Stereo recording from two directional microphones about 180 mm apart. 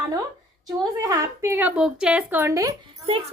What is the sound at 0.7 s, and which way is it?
Speech, 15° right (ahead or behind).